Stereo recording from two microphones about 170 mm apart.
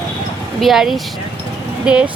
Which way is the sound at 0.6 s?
Centre (ahead or behind).